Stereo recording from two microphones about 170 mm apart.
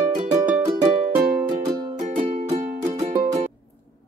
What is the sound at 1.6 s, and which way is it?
Music, 25° right (ahead or behind).